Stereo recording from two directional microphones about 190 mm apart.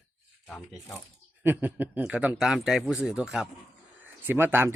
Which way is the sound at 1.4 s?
10° right (ahead or behind).